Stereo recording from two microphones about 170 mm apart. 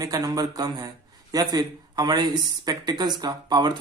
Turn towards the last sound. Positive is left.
turn(degrees=-25)  # may be behind; listen again after turning